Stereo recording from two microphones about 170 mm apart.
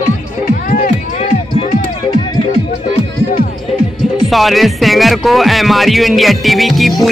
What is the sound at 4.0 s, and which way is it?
Speech, centre (ahead or behind).